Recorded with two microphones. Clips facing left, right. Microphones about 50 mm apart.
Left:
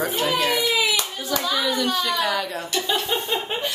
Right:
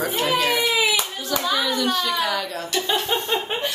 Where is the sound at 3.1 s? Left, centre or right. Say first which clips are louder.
Right 1 dB; centre.